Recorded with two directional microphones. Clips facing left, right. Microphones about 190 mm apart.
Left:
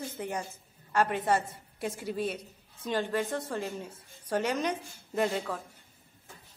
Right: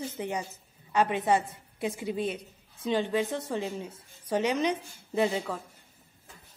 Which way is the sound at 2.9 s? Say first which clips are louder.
Right 2 dB; 15° right (ahead or behind).